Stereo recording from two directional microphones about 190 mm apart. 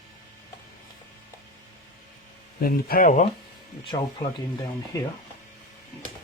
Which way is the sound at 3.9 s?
20° left (ahead or behind).